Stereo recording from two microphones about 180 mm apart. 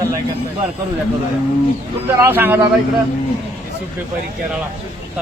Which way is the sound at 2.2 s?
10° right (ahead or behind).